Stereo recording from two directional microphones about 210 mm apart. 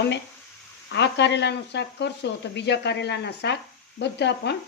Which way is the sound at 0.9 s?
55° left (ahead or behind).